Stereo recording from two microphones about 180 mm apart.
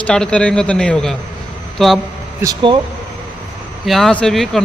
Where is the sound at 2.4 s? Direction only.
25° right (ahead or behind).